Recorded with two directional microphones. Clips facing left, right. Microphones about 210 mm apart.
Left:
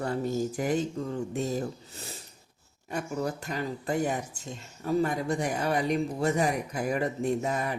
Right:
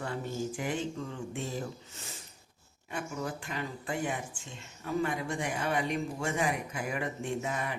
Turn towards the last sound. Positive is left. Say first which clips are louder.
# left 5 dB
turn(degrees=40)  # may be behind; listen again after turning